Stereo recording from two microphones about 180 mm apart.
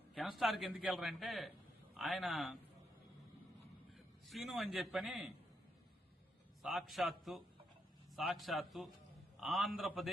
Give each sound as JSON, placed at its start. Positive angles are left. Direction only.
{"t": 0.1, "sound": "a man's voice", "side_deg": 0}
{"t": 3.9, "sound": "a man's voice", "side_deg": 0}
{"t": 6.6, "sound": "a man's voice", "side_deg": 0}